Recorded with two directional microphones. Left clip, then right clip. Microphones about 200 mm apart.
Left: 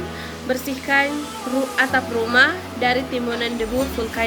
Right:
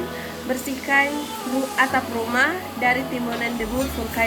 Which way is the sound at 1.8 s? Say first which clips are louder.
Left 1 dB; 25° left (ahead or behind).